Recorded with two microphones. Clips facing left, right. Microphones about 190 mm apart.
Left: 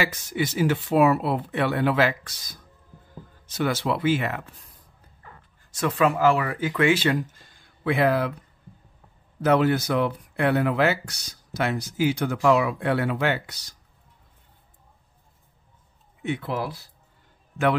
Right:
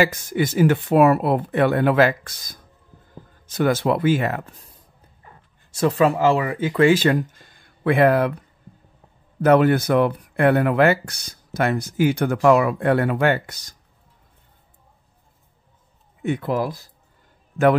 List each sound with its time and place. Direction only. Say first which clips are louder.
0.0 s speech: right 6 dB; 45° right (ahead or behind)
5.2 s a sound: left 1 dB; 20° right (ahead or behind)
5.9 s speech: right 3 dB; 35° right (ahead or behind)
6.7 s speech: right 6 dB; 40° right (ahead or behind)
7.8 s speech: right 5 dB; 55° right (ahead or behind)
9.4 s speech: right 5 dB; 55° right (ahead or behind)
16.2 s speech: right 5 dB; 45° right (ahead or behind)